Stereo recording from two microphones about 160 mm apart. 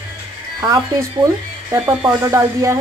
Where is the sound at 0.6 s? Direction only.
20° right (ahead or behind).